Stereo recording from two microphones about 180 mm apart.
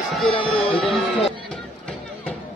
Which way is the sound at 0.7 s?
Centre (ahead or behind).